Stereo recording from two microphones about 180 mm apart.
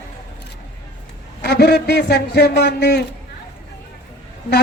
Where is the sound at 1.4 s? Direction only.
65° left (ahead or behind).